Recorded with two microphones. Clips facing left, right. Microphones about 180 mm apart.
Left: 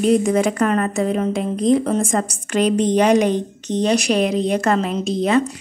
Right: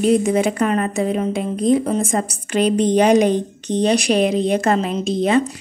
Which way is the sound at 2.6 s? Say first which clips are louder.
Right 1 dB; 30° right (ahead or behind).